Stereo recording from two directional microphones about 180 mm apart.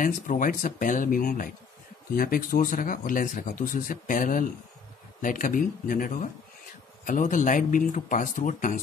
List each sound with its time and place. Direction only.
0.0 s speech: 45° left (ahead or behind)